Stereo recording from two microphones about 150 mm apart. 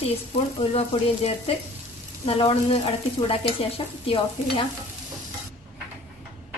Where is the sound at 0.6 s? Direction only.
40° left (ahead or behind).